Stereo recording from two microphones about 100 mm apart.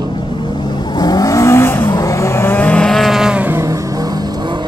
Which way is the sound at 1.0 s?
40° left (ahead or behind).